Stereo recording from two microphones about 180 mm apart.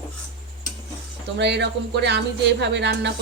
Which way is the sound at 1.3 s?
70° right (ahead or behind).